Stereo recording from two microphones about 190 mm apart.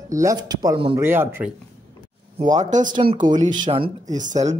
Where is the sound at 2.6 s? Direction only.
40° right (ahead or behind).